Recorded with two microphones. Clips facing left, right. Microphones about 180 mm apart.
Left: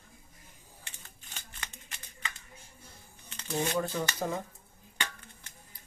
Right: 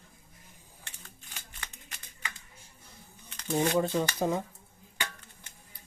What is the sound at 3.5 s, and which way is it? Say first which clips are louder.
Speech: right 4 dB; 20° right (ahead or behind).